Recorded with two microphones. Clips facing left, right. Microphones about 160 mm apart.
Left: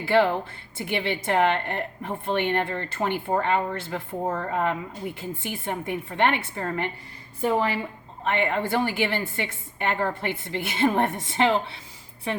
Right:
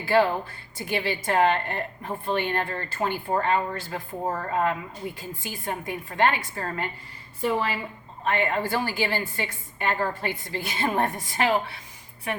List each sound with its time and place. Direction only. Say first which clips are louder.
0.8 s a woman's voice: left 1 dB; 20° left (ahead or behind)